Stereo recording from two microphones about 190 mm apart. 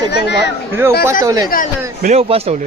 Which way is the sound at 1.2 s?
20° right (ahead or behind).